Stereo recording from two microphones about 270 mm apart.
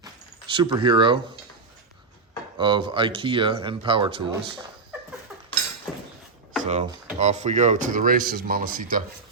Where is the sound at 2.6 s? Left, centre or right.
Centre.